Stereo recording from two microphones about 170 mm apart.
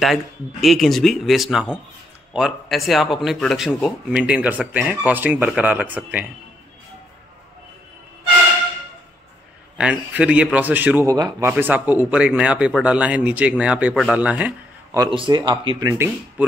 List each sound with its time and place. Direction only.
0.0 s speech: centre (ahead or behind)
9.8 s speech: 5° right (ahead or behind)
11.1 s speech: 20° right (ahead or behind)
11.5 s speech: 10° right (ahead or behind)
15.0 s speech: 30° right (ahead or behind)